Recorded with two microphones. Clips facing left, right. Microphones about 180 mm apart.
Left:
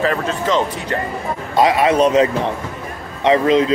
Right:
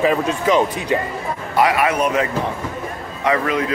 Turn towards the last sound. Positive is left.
turn(degrees=25)  # may be behind; listen again after turning